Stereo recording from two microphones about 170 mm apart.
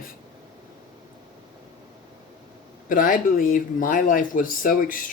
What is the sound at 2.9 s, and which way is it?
Speech, 55° left (ahead or behind).